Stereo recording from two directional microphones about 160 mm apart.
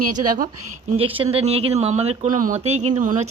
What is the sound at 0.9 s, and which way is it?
Speech, 35° right (ahead or behind).